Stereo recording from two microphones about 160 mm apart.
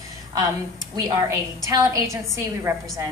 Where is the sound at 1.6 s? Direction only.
20° right (ahead or behind).